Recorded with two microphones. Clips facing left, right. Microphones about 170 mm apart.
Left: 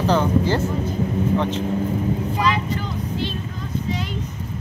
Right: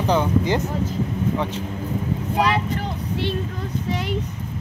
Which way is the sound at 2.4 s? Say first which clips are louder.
Right 5 dB; 60° right (ahead or behind).